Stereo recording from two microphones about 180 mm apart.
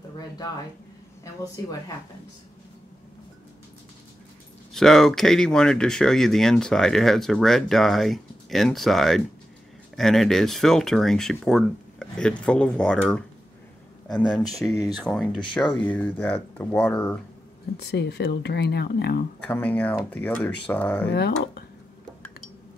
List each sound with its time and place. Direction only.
1.2 s speech: 20° left (ahead or behind)
4.7 s speech: centre (ahead or behind)
14.6 s speech: 5° left (ahead or behind)
17.7 s speech: 70° left (ahead or behind)
19.4 s speech: 10° left (ahead or behind)
21.1 s speech: 65° left (ahead or behind)